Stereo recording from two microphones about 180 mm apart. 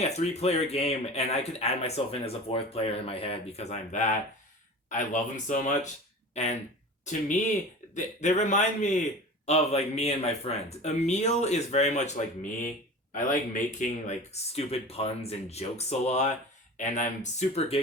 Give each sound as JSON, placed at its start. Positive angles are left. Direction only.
{"t": 0.0, "sound": "speech", "side_deg": 35}